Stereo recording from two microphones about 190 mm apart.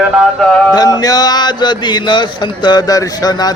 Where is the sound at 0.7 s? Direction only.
20° left (ahead or behind).